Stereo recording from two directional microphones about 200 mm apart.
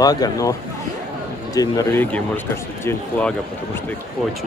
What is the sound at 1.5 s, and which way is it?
Speech, 20° left (ahead or behind).